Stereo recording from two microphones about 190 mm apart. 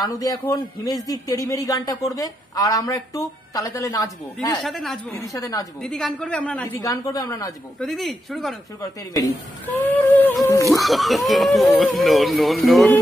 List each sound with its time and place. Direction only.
0.0 s a man's voice: 20° left (ahead or behind)
4.6 s speech: centre (ahead or behind)
5.2 s speech: 15° left (ahead or behind)
5.8 s speech: 5° left (ahead or behind)
7.8 s speech: centre (ahead or behind)
9.8 s a sound: 10° left (ahead or behind)
10.7 s speech: centre (ahead or behind)